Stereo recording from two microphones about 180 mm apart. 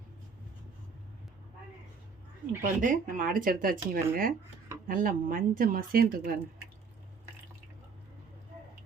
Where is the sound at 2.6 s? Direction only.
45° right (ahead or behind).